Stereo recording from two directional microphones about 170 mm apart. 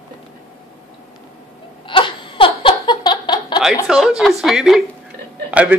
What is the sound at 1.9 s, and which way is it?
Baby laughter, 30° left (ahead or behind).